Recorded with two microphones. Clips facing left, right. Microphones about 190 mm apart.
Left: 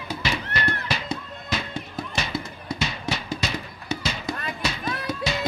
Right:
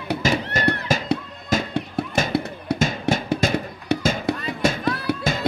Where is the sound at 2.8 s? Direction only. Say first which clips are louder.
Right 7 dB; 50° right (ahead or behind).